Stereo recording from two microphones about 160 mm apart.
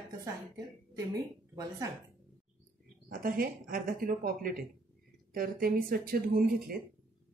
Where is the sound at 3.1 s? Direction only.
60° right (ahead or behind).